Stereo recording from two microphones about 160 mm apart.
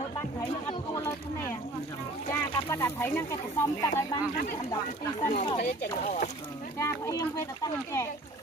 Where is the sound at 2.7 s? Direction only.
15° left (ahead or behind).